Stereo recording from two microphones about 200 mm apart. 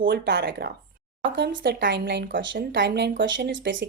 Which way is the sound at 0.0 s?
55° right (ahead or behind).